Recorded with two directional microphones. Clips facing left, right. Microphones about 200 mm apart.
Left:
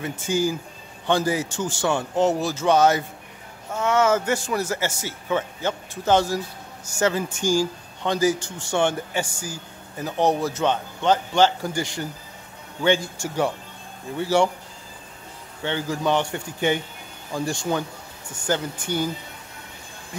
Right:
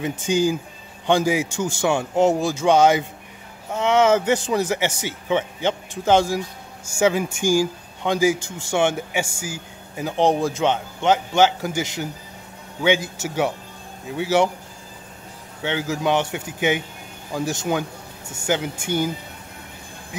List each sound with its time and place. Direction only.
0.2 s a man's voice: 15° right (ahead or behind)
15.6 s speech: 10° right (ahead or behind)